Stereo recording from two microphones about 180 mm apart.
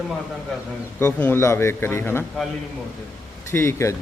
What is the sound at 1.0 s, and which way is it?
A man's voice, 10° left (ahead or behind).